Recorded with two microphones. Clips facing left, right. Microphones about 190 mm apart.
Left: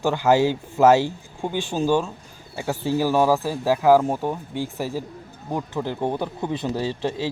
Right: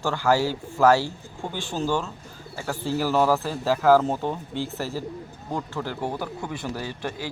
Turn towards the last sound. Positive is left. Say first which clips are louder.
# left 6 dB
turn(degrees=25)  # may be behind; listen again after turning